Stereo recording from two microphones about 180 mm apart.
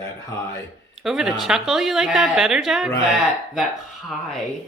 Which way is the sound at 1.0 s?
Centre (ahead or behind).